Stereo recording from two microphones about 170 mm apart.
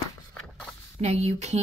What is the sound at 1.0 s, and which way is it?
Speech, 40° right (ahead or behind).